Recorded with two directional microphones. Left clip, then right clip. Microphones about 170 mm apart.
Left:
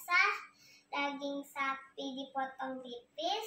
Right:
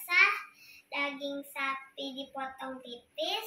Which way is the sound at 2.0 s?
20° left (ahead or behind).